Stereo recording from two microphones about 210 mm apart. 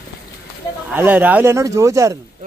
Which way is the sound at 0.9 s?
10° right (ahead or behind).